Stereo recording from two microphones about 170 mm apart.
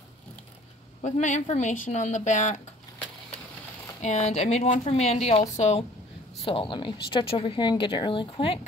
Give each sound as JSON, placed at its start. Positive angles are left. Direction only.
{"t": 1.0, "sound": "a woman's voice", "side_deg": 45}
{"t": 4.0, "sound": "speech", "side_deg": 40}
{"t": 6.4, "sound": "speech", "side_deg": 30}